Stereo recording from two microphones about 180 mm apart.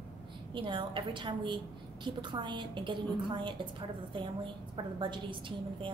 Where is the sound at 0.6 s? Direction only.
25° right (ahead or behind).